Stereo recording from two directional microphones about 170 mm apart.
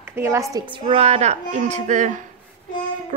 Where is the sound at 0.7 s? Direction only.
35° right (ahead or behind).